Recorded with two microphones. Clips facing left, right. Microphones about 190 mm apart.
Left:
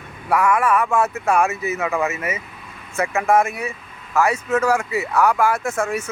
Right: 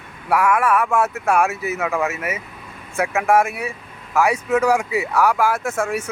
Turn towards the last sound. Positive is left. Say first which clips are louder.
# even
turn(degrees=-10)  # may be behind; listen again after turning